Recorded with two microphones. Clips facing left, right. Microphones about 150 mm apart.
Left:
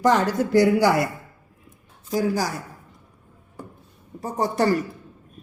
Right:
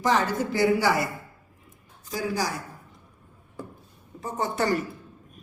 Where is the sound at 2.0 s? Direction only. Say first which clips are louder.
Left 5 dB; 45° left (ahead or behind).